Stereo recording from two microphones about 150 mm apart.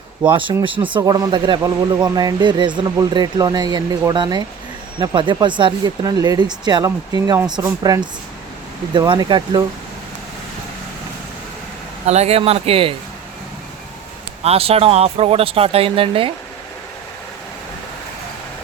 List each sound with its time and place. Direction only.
0.2 s speech: 35° right (ahead or behind)
12.0 s speech: 45° right (ahead or behind)
14.4 s speech: 40° right (ahead or behind)